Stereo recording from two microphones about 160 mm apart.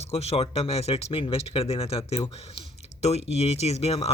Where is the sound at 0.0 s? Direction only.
40° left (ahead or behind).